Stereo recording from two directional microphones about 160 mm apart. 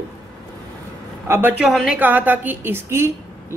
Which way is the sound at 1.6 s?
Centre (ahead or behind).